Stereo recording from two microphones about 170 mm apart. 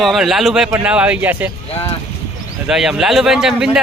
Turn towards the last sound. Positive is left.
turn(degrees=-5)  # may be behind; listen again after turning